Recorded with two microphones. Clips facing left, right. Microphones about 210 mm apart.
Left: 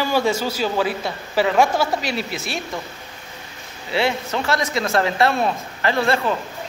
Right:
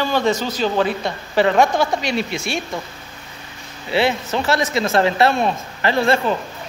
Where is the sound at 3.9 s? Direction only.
30° right (ahead or behind).